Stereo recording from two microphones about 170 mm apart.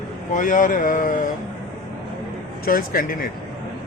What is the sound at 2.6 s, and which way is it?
Speech, 60° left (ahead or behind).